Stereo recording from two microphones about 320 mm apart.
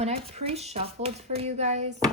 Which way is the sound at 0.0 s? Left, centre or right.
Centre.